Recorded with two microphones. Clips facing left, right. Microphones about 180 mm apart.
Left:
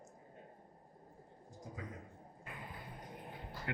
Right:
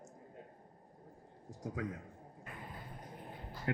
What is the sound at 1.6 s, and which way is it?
Speech, 75° right (ahead or behind).